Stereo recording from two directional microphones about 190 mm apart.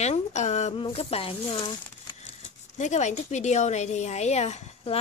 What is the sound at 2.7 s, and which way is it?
A woman's voice, 40° left (ahead or behind).